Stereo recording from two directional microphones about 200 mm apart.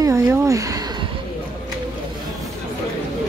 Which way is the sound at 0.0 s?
15° right (ahead or behind).